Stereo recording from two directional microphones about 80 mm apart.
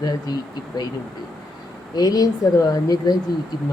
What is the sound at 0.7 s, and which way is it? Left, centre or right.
Speech, left.